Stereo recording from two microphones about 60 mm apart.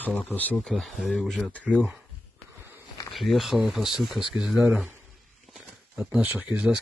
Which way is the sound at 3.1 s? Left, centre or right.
Centre.